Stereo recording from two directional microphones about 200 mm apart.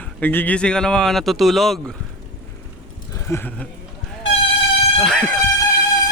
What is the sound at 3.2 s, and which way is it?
Speech, 10° left (ahead or behind).